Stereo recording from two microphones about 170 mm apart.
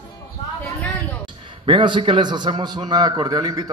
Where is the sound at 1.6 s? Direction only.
30° right (ahead or behind).